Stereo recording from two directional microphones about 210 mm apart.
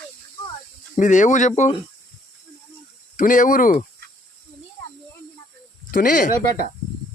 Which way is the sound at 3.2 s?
40° left (ahead or behind).